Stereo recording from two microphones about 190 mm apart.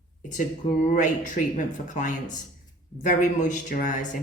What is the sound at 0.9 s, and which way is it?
Speech, 40° left (ahead or behind).